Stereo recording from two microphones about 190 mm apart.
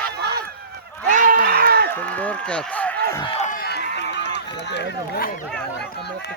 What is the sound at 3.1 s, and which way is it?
Speech, 25° left (ahead or behind).